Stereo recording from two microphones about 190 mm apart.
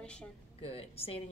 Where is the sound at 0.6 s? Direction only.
30° left (ahead or behind).